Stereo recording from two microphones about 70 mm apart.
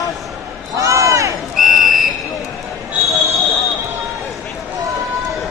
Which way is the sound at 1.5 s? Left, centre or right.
Centre.